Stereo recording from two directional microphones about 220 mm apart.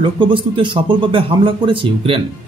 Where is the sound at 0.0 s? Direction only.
25° right (ahead or behind).